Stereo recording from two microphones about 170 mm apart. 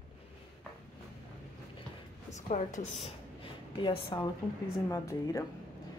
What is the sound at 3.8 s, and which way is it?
Speech, 25° left (ahead or behind).